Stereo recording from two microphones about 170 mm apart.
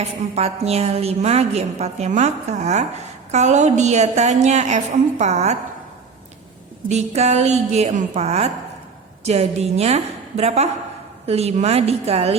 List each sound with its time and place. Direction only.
0.0 s a woman's voice: 40° right (ahead or behind)
6.8 s a woman's voice: 40° right (ahead or behind)